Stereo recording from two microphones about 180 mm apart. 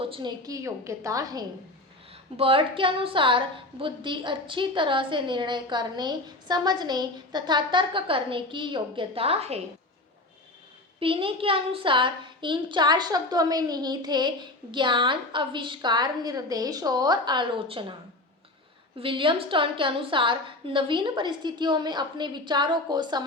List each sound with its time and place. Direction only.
0.0 s a woman's voice: 25° right (ahead or behind)
2.3 s a woman's voice: 30° right (ahead or behind)
11.0 s a woman's voice: 30° right (ahead or behind)
18.9 s a woman's voice: 30° right (ahead or behind)